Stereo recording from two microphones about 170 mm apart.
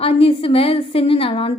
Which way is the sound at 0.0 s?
35° left (ahead or behind).